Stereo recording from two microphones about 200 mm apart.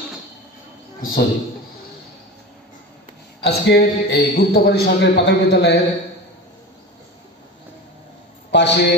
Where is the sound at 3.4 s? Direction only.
55° left (ahead or behind).